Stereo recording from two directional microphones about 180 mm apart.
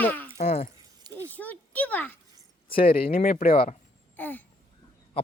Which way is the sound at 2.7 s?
55° left (ahead or behind).